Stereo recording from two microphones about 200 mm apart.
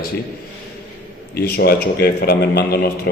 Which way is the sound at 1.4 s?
50° left (ahead or behind).